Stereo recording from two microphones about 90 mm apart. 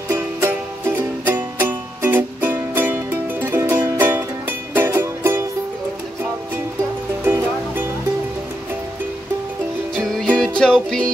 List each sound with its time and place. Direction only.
0.1 s music: 30° right (ahead or behind)
7.2 s music: 25° right (ahead or behind)
9.9 s music: 5° left (ahead or behind)